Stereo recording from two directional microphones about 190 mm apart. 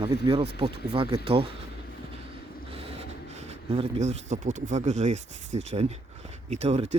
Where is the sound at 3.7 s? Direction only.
35° right (ahead or behind).